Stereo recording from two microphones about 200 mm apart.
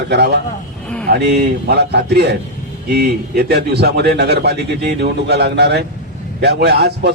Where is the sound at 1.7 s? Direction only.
55° right (ahead or behind).